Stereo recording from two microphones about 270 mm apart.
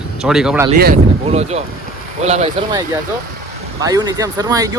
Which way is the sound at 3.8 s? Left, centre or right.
Centre.